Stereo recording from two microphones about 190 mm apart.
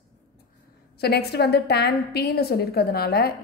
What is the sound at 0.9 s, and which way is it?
A woman's voice, 60° left (ahead or behind).